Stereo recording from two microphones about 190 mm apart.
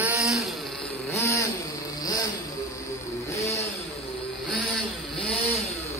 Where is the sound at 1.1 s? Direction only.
15° left (ahead or behind).